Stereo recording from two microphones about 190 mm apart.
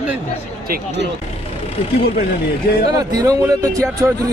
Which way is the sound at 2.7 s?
55° left (ahead or behind).